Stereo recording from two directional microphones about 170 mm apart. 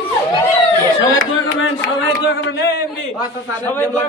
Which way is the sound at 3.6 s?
10° left (ahead or behind).